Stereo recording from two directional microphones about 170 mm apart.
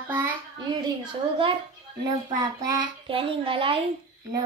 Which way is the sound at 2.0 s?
25° right (ahead or behind).